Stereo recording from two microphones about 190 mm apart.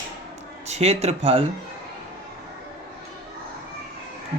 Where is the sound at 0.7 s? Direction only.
35° right (ahead or behind).